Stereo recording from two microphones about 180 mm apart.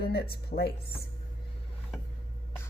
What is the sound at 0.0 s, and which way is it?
Speech, 60° left (ahead or behind).